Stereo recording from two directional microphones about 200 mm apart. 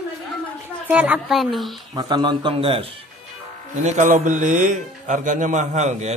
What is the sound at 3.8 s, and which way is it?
Speech, 40° right (ahead or behind).